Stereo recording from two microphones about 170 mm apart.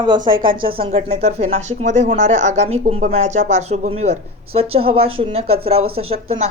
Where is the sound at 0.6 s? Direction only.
30° right (ahead or behind).